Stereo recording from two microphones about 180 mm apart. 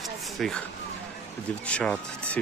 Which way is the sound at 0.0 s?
Centre (ahead or behind).